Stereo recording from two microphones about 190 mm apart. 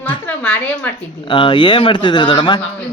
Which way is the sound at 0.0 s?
10° left (ahead or behind).